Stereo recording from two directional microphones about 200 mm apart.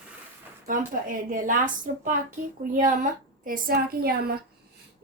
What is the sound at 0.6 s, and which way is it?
Speech, 40° right (ahead or behind).